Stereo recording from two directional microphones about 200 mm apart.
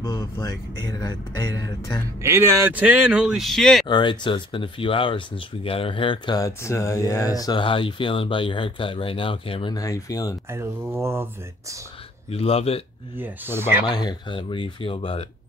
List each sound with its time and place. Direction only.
0.0 s speech: 20° left (ahead or behind)
2.2 s speech: 15° right (ahead or behind)
3.8 s speech: 25° left (ahead or behind)
10.5 s speech: 15° right (ahead or behind)
12.3 s speech: 30° left (ahead or behind)
13.2 s speech: 10° right (ahead or behind)
13.8 s speech: 20° left (ahead or behind)